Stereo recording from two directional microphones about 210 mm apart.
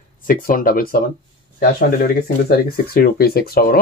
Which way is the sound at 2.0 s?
45° left (ahead or behind).